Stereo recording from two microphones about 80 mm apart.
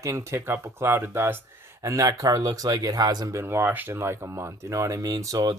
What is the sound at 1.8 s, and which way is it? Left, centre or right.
Speech, right.